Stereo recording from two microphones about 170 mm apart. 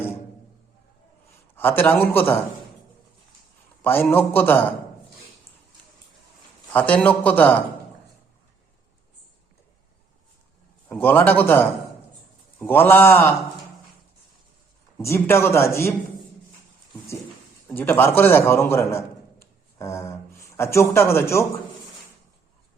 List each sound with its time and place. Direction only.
1.5 s speech: 10° left (ahead or behind)
3.8 s a man's voice: 10° left (ahead or behind)
6.7 s speech: 10° left (ahead or behind)
10.8 s speech: 10° left (ahead or behind)
14.9 s speech: 15° left (ahead or behind)
17.7 s a man's voice: 10° left (ahead or behind)